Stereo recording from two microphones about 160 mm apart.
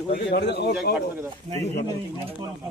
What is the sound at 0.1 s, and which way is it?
Speech, 80° left.